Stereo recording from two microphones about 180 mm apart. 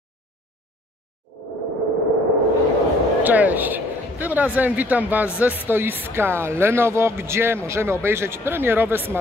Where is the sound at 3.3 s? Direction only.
10° right (ahead or behind).